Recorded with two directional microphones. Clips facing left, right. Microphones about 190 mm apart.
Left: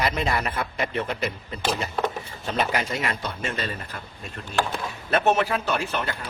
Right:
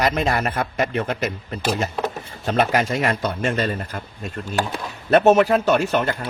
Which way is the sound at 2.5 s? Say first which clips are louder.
Right 6 dB; 45° right (ahead or behind).